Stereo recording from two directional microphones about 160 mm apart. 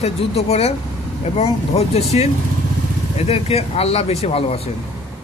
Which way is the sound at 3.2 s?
40° left (ahead or behind).